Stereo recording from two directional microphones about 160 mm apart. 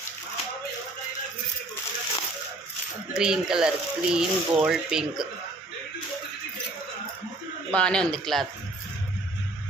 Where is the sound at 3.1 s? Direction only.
5° right (ahead or behind).